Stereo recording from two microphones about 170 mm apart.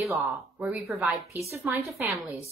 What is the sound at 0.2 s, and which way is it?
A woman's voice, centre (ahead or behind).